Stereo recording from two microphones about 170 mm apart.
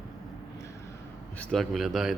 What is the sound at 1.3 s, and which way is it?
Speech, 5° left (ahead or behind).